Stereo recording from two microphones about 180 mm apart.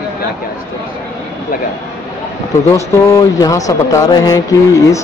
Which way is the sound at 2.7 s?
20° left (ahead or behind).